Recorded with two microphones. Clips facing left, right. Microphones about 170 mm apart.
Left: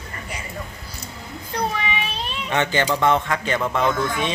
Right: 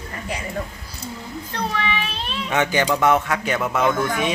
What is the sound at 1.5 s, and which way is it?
Child singing, 5° left (ahead or behind).